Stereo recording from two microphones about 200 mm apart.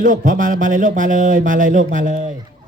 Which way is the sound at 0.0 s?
40° right (ahead or behind).